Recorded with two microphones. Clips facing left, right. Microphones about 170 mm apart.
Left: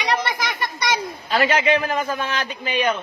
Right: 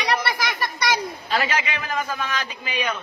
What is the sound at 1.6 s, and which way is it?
Speech, 30° left (ahead or behind).